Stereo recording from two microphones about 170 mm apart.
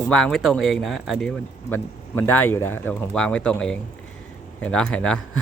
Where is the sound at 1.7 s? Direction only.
10° left (ahead or behind).